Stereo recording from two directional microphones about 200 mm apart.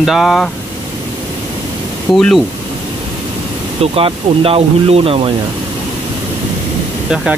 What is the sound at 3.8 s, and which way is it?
Speech, 30° right (ahead or behind).